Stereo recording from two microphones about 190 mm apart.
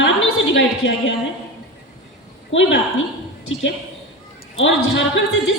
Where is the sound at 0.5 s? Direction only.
75° left (ahead or behind).